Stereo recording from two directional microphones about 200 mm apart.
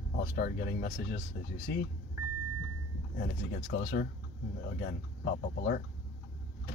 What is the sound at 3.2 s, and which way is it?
Speech, 55° left (ahead or behind).